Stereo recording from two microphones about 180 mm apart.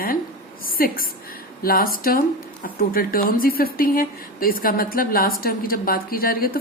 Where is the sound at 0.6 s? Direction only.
55° left (ahead or behind).